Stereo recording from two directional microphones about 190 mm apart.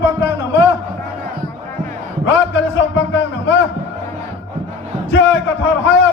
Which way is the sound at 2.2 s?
75° left (ahead or behind).